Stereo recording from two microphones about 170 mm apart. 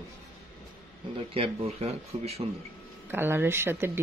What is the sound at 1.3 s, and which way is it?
Speech, 35° right (ahead or behind).